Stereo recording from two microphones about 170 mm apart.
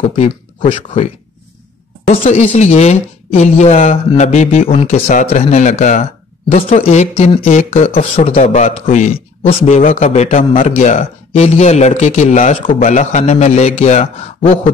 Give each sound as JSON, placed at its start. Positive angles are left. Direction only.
{"t": 2.0, "sound": "speech", "side_deg": 40}